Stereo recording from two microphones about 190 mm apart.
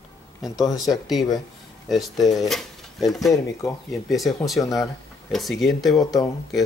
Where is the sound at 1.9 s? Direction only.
Centre (ahead or behind).